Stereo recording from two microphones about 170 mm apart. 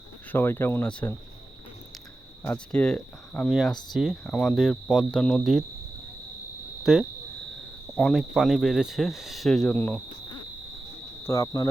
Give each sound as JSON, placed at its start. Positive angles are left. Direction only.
{"t": 0.3, "sound": "speech", "side_deg": 15}
{"t": 2.4, "sound": "speech", "side_deg": 10}
{"t": 6.9, "sound": "speech", "side_deg": 0}
{"t": 11.2, "sound": "speech", "side_deg": 20}